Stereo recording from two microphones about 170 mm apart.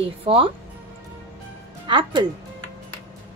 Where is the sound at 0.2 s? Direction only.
35° right (ahead or behind).